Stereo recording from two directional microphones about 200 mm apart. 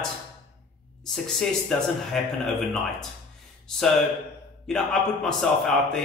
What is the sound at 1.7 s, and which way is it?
A man's voice, 5° left (ahead or behind).